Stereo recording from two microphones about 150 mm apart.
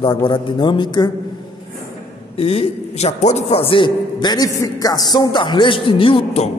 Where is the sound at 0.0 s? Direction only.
35° left (ahead or behind).